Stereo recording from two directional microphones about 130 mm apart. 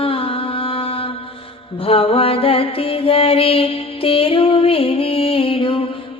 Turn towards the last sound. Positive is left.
turn(degrees=45)  # may be behind; listen again after turning